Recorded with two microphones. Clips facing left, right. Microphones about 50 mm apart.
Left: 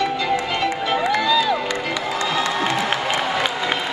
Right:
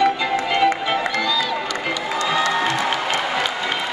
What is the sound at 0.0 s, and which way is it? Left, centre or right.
Music, centre.